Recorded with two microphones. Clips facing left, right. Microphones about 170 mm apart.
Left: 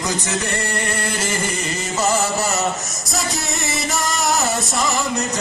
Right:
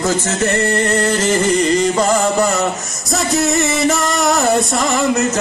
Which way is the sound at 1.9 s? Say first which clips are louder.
Right 5 dB; 55° right (ahead or behind).